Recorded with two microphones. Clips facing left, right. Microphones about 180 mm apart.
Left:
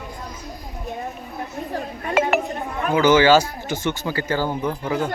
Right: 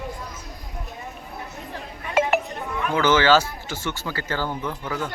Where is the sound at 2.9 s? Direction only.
10° left (ahead or behind).